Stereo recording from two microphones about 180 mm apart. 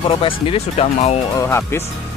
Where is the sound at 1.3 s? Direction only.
15° left (ahead or behind).